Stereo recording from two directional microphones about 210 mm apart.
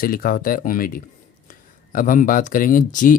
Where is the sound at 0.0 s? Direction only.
40° left (ahead or behind).